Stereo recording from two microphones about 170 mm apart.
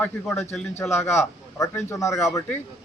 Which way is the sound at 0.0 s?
15° left (ahead or behind).